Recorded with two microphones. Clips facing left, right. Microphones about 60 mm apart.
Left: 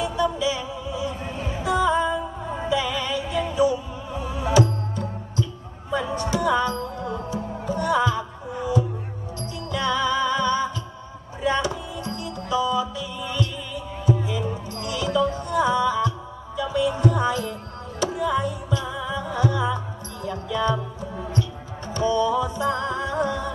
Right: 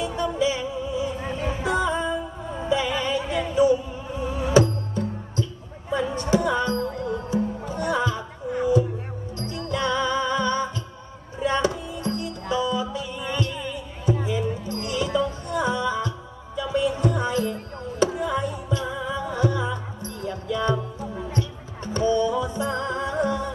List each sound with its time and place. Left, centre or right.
0.0 s music: right
7.7 s music: right
9.4 s music: right
15.2 s music: left
15.6 s music: right
16.9 s music: left
17.2 s music: right